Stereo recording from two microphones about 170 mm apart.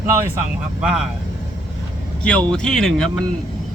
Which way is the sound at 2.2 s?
5° left (ahead or behind).